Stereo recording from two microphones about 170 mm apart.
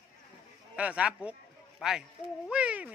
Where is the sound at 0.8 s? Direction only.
5° right (ahead or behind).